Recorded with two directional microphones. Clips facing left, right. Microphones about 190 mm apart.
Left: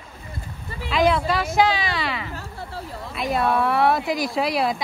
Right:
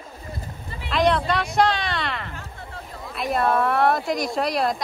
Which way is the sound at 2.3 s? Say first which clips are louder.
Left 4 dB; 35° left (ahead or behind).